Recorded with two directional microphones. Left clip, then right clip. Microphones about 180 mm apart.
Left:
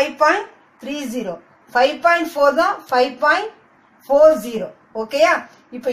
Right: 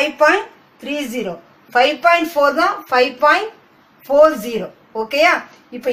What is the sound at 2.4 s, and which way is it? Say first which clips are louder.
Speech: right 1 dB; 15° right (ahead or behind).